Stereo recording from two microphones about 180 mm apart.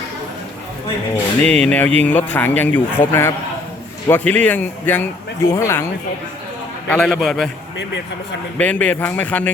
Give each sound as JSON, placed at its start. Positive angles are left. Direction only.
{"t": 1.1, "sound": "a man's voice", "side_deg": 5}
{"t": 6.8, "sound": "a man's voice", "side_deg": 5}
{"t": 8.5, "sound": "a man's voice", "side_deg": 10}